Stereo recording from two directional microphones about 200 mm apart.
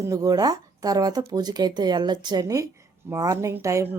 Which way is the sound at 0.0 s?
15° right (ahead or behind).